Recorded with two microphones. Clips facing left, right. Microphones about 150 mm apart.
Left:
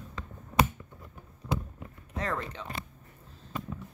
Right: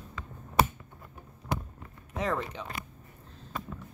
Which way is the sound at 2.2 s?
15° right (ahead or behind).